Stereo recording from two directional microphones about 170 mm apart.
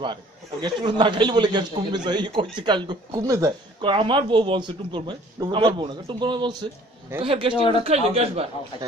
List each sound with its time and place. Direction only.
0.0 s a man's voice: 25° right (ahead or behind)